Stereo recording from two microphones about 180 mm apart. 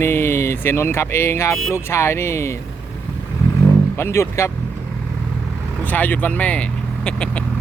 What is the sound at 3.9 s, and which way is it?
Speech, 15° left (ahead or behind).